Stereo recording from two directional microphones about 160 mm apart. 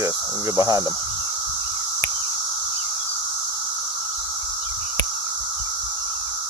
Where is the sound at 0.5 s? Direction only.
20° right (ahead or behind).